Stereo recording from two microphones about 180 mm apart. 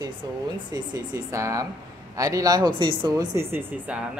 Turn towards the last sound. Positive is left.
turn(degrees=-15)  # may be behind; listen again after turning